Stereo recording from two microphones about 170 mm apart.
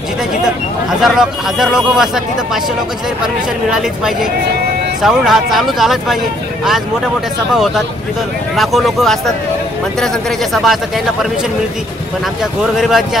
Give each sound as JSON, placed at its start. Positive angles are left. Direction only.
{"t": 1.0, "sound": "speech", "side_deg": 0}
{"t": 3.7, "sound": "speech", "side_deg": -5}
{"t": 7.5, "sound": "speech", "side_deg": 0}
{"t": 10.5, "sound": "speech", "side_deg": 0}
{"t": 12.7, "sound": "speech", "side_deg": 0}